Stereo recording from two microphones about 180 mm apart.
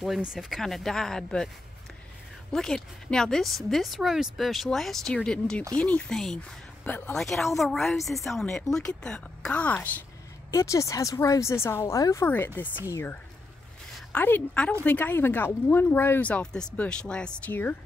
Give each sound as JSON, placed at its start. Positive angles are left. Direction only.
{"t": 0.0, "sound": "speech", "side_deg": 0}
{"t": 2.5, "sound": "a woman's voice", "side_deg": 5}